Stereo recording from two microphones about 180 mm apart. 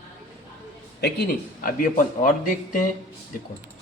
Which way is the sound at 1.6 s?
50° left (ahead or behind).